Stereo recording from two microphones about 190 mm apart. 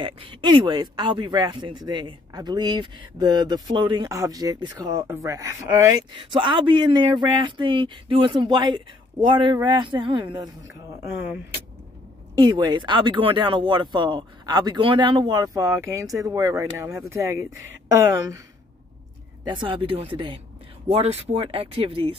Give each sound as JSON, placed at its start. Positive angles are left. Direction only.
{"t": 0.0, "sound": "speech", "side_deg": -25}
{"t": 12.4, "sound": "a woman's voice", "side_deg": -20}
{"t": 19.4, "sound": "speech", "side_deg": -25}